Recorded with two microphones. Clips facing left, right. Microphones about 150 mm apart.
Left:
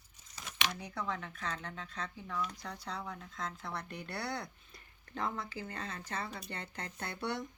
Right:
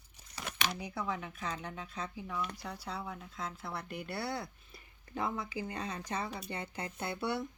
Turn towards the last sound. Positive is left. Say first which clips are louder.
# right 3 dB
turn(degrees=-10)  # may be behind; listen again after turning